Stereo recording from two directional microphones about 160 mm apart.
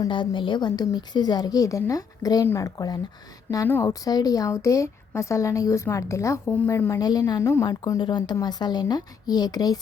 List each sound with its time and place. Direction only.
0.0 s a woman's voice: 30° left (ahead or behind)